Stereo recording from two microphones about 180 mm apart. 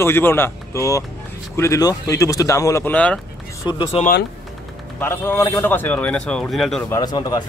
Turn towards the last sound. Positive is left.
turn(degrees=20)  # may be behind; listen again after turning